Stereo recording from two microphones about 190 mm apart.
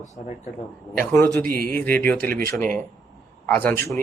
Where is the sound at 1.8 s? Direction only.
10° left (ahead or behind).